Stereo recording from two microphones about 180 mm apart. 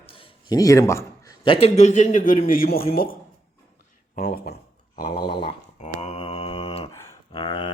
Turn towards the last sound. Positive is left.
turn(degrees=25)  # may be behind; listen again after turning